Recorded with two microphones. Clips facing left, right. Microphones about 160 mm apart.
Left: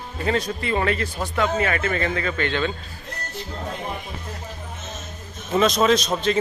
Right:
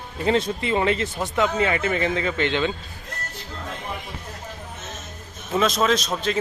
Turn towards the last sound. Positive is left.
turn(degrees=0)  # may be behind; listen again after turning